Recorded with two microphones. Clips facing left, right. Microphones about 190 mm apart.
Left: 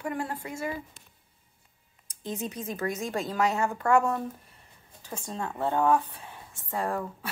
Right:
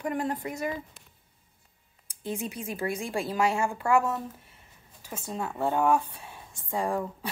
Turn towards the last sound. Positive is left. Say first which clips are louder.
# right 2 dB
turn(degrees=-15)  # may be behind; listen again after turning